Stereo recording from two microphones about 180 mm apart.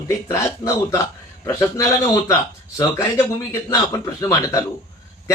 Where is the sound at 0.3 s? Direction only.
15° left (ahead or behind).